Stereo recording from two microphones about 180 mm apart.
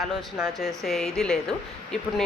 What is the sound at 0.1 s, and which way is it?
A woman's voice, 5° right (ahead or behind).